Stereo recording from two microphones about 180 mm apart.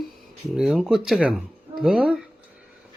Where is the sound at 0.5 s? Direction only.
5° right (ahead or behind).